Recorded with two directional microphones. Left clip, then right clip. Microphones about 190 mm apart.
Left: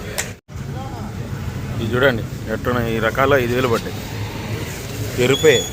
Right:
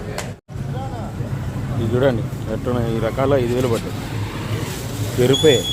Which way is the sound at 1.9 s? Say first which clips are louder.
Left 2 dB; 5° right (ahead or behind).